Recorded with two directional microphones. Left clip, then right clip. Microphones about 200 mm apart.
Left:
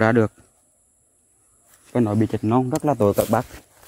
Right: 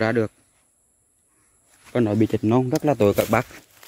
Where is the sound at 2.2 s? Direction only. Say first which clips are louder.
Even; 15° right (ahead or behind).